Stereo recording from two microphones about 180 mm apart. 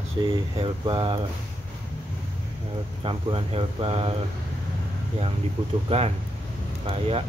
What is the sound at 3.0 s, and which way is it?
Speech, 30° right (ahead or behind).